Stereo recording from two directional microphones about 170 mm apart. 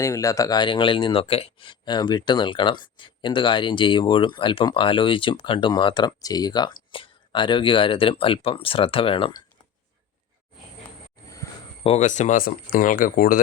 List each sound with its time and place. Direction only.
0.0 s speech: 20° left (ahead or behind)
11.8 s speech: 40° left (ahead or behind); by 13.4 s 55° left (ahead or behind)